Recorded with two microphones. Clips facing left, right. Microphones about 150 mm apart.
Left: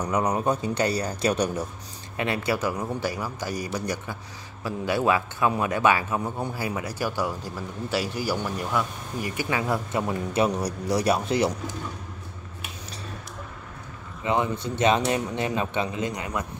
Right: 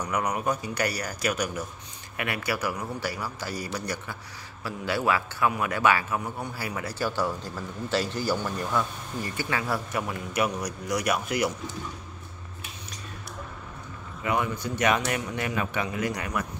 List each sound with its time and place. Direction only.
0.0 s speech: 30° left (ahead or behind)
14.2 s speech: 25° left (ahead or behind)